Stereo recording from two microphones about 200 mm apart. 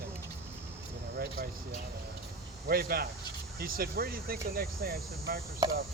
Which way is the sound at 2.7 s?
50° right (ahead or behind).